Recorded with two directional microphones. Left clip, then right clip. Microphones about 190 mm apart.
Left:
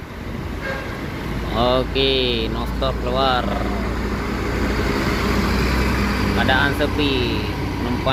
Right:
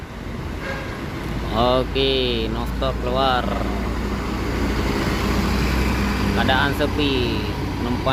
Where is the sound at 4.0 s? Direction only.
55° right (ahead or behind); by 6.4 s 25° right (ahead or behind).